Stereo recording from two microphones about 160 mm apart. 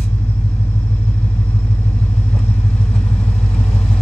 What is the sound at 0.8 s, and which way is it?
Vehicle, 10° left (ahead or behind).